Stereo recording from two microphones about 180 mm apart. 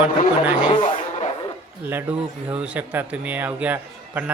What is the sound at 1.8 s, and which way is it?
Speech, 10° right (ahead or behind).